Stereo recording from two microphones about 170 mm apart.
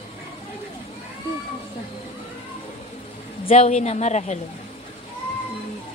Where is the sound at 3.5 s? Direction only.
40° left (ahead or behind).